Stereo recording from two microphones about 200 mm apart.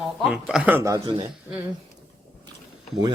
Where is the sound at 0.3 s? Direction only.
5° right (ahead or behind); by 1.3 s 20° right (ahead or behind).